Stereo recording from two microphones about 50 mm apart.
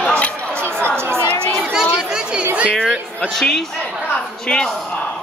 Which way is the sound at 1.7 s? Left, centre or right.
Centre.